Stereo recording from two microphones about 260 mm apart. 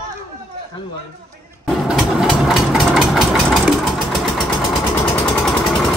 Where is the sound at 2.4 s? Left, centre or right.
Centre.